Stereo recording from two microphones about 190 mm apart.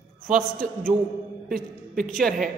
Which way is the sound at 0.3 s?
50° right (ahead or behind).